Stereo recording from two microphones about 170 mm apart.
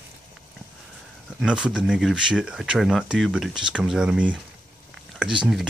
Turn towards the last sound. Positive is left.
turn(degrees=-5)  # may be behind; listen again after turning